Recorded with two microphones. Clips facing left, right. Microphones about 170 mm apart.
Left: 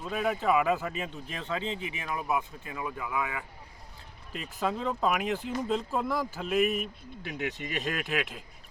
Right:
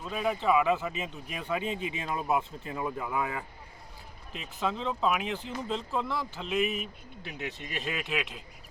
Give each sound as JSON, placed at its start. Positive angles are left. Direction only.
{"t": 0.0, "sound": "speech", "side_deg": 0}
{"t": 4.3, "sound": "speech", "side_deg": 5}